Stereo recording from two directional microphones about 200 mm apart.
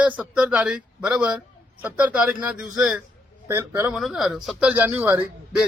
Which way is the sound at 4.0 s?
Centre (ahead or behind).